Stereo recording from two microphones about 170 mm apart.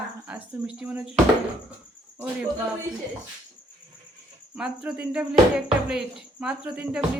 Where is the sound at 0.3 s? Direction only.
5° right (ahead or behind).